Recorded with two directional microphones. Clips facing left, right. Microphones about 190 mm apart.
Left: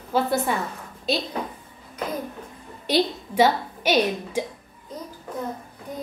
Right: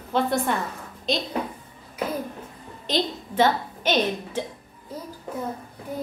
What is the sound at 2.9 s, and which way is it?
A woman's voice, 10° left (ahead or behind).